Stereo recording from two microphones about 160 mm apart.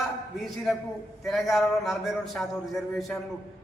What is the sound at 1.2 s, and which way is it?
A man's voice, centre (ahead or behind).